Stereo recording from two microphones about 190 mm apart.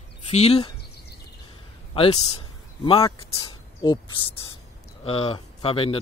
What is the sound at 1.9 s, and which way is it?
Speech, 30° left (ahead or behind).